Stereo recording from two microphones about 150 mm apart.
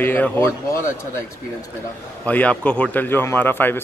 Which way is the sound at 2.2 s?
10° left (ahead or behind).